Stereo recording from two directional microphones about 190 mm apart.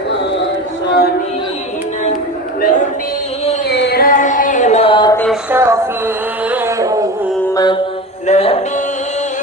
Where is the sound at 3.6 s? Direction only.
60° left (ahead or behind); by 5.2 s 25° left (ahead or behind).